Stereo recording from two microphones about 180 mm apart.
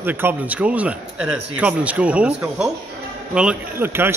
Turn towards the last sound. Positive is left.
turn(degrees=-10)  # may be behind; listen again after turning